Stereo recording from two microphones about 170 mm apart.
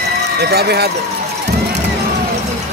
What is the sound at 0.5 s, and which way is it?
Speech, 70° right (ahead or behind).